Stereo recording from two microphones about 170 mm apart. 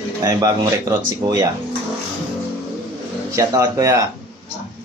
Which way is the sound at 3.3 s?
20° right (ahead or behind).